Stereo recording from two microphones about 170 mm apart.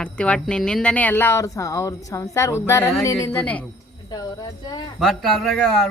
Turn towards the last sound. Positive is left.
turn(degrees=5)  # may be behind; listen again after turning